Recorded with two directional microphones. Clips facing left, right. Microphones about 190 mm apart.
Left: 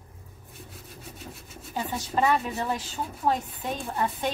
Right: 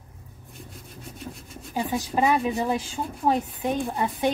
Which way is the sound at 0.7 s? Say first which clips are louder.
Right 2 dB; 5° left (ahead or behind).